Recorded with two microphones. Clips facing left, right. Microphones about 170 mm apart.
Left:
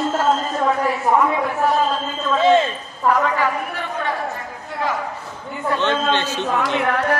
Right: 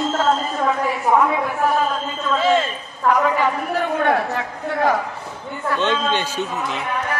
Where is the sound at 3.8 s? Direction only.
65° right (ahead or behind).